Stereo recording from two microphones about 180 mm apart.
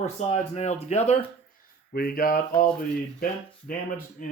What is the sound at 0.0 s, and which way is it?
Speech, 40° left (ahead or behind).